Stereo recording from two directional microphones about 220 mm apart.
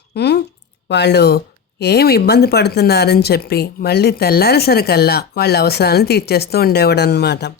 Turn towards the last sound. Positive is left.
turn(degrees=50)  # may be behind; listen again after turning